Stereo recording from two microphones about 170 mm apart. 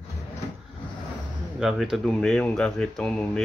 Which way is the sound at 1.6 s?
Centre (ahead or behind).